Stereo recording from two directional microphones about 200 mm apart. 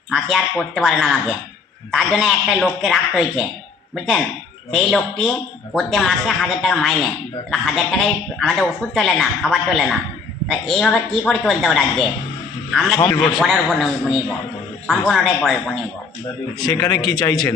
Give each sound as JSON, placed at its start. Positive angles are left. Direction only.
{"t": 0.1, "sound": "speech", "side_deg": 0}
{"t": 16.6, "sound": "a man's voice", "side_deg": 20}